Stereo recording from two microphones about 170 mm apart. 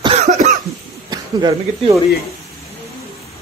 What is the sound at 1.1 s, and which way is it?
Speech, 25° right (ahead or behind).